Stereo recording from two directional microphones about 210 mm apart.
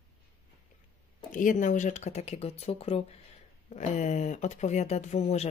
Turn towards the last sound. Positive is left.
turn(degrees=30)  # may be behind; listen again after turning